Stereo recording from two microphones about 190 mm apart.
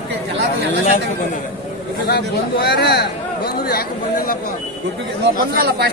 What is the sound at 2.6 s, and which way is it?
A man's voice, 60° left (ahead or behind).